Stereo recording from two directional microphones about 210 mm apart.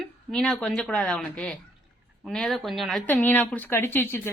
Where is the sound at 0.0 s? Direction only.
Centre (ahead or behind).